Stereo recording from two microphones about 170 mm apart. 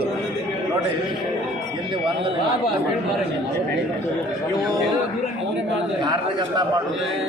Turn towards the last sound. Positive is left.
turn(degrees=-25)  # may be behind; listen again after turning